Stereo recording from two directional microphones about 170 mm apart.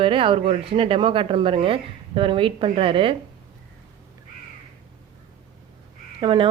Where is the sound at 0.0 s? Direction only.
30° right (ahead or behind).